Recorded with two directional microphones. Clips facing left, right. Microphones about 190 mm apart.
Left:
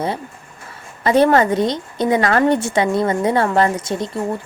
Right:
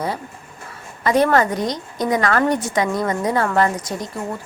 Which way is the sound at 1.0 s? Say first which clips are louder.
Left 3 dB; 30° left (ahead or behind).